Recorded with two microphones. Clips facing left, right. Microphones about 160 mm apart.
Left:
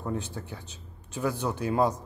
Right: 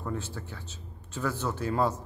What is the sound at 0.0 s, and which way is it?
A man's voice, 20° left (ahead or behind).